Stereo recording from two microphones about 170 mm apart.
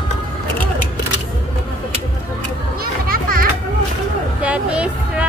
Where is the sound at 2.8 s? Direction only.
60° right (ahead or behind).